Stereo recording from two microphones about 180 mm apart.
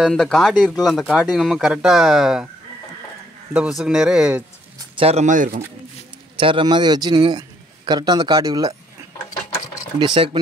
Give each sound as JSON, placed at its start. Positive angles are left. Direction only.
{"t": 0.0, "sound": "speech", "side_deg": 5}
{"t": 3.5, "sound": "speech", "side_deg": -5}
{"t": 4.9, "sound": "speech", "side_deg": -35}
{"t": 6.4, "sound": "a man's voice", "side_deg": -25}
{"t": 9.9, "sound": "a man's voice", "side_deg": -30}